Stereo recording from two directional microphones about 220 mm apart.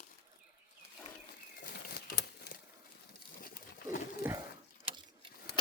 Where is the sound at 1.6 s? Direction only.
45° left (ahead or behind).